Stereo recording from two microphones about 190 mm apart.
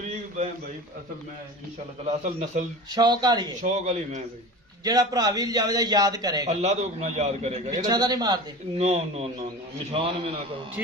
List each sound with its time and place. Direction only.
2.0 s a man's voice: 40° right (ahead or behind)
2.9 s a man's voice: 20° right (ahead or behind)
3.6 s a man's voice: 35° right (ahead or behind)
4.8 s a man's voice: 20° right (ahead or behind)
6.5 s a man's voice: 35° right (ahead or behind)
7.9 s a man's voice: 20° right (ahead or behind)
8.8 s a man's voice: 35° right (ahead or behind)
10.8 s speech: 10° right (ahead or behind)